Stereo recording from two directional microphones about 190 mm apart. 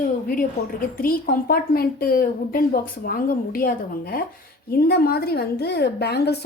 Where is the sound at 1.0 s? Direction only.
50° left (ahead or behind).